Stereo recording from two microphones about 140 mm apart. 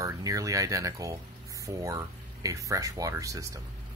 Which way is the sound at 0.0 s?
25° right (ahead or behind).